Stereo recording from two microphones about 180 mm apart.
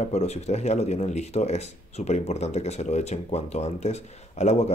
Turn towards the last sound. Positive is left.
turn(degrees=40)  # may be behind; listen again after turning